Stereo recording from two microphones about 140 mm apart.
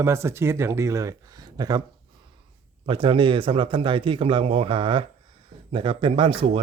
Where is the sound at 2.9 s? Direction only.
35° right (ahead or behind).